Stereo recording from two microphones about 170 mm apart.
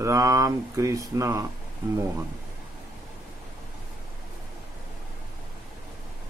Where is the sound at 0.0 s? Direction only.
20° right (ahead or behind).